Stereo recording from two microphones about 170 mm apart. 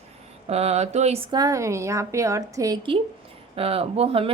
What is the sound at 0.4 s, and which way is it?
A woman's voice, 40° right (ahead or behind).